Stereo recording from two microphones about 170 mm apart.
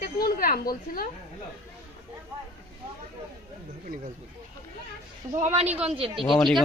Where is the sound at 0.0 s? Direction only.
60° left (ahead or behind).